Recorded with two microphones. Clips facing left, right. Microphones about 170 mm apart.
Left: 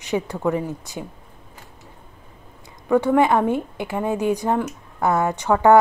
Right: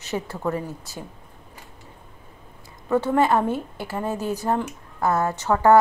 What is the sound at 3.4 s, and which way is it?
A woman's voice, 15° left (ahead or behind).